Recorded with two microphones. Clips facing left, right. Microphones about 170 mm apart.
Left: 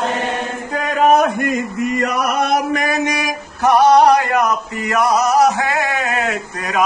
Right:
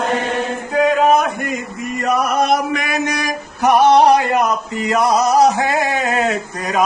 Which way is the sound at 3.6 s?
25° right (ahead or behind).